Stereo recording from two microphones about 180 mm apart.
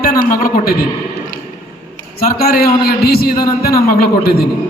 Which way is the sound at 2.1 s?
55° left (ahead or behind).